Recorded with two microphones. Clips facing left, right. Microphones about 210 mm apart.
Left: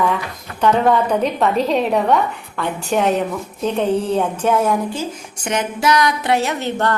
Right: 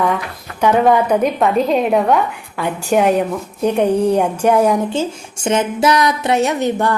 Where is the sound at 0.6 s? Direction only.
10° right (ahead or behind).